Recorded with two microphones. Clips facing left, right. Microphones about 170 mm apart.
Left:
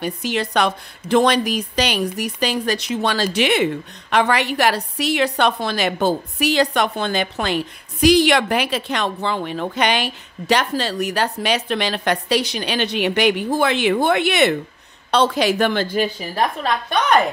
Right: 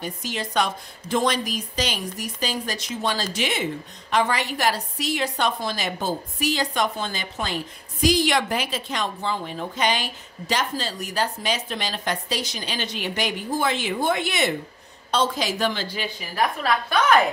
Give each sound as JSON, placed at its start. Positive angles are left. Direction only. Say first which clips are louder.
{"t": 0.0, "sound": "a woman's voice", "louder": "left 7 dB", "side_deg": 70}
{"t": 16.2, "sound": "a woman's voice", "louder": "left 3 dB", "side_deg": 30}